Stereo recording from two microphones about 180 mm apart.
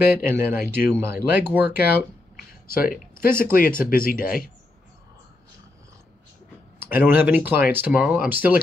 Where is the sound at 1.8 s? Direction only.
60° left (ahead or behind).